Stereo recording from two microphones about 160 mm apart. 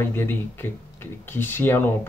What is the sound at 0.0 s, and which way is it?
Speech, 15° left (ahead or behind).